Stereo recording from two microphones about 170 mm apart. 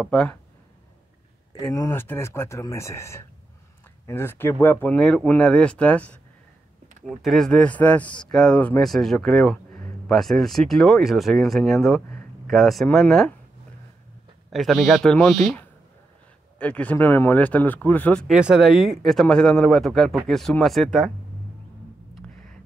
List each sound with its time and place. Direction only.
0.0 s speech: 5° left (ahead or behind)
1.6 s speech: 20° left (ahead or behind); by 13.3 s centre (ahead or behind)
14.5 s speech: centre (ahead or behind)
16.5 s speech: 10° left (ahead or behind)
18.3 s speech: 5° right (ahead or behind)